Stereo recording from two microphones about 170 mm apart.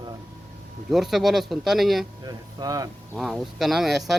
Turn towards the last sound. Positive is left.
turn(degrees=0)  # may be behind; listen again after turning